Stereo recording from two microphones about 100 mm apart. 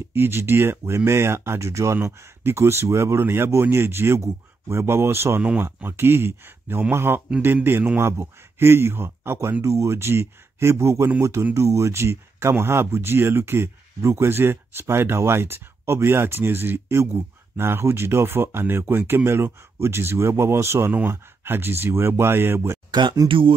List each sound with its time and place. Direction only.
0.1 s speech: 25° right (ahead or behind)
22.8 s speech: 50° right (ahead or behind)
23.2 s speech: 65° right (ahead or behind)